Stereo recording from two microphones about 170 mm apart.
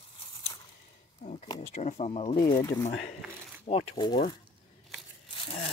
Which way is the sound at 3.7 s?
35° left (ahead or behind).